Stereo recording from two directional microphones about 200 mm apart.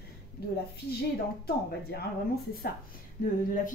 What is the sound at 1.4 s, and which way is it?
Speech, 55° left (ahead or behind).